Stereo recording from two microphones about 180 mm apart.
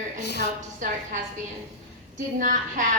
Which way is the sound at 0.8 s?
45° right (ahead or behind).